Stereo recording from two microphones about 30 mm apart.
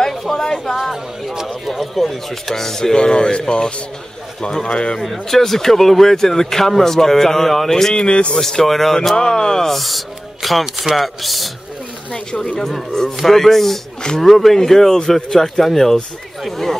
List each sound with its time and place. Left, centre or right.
0.3 s a sound: centre
1.5 s a sound: centre
2.4 s speech: centre
2.9 s speech: left
5.0 s speech: centre
7.9 s speech: left
8.4 s speech: centre
9.1 s speech: left
9.8 s speech: centre
12.6 s speech: centre